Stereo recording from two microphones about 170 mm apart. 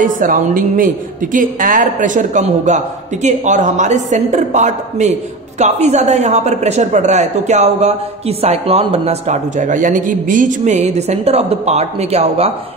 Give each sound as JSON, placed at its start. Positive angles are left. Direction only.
{"t": 0.0, "sound": "a man's voice", "side_deg": -55}